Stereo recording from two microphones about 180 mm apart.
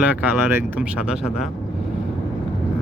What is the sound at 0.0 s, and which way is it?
Speech, 10° right (ahead or behind).